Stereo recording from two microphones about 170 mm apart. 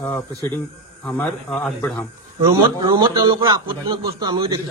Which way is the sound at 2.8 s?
30° right (ahead or behind).